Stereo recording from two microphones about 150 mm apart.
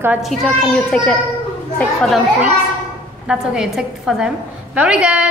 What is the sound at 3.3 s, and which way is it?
A woman's voice, 5° right (ahead or behind).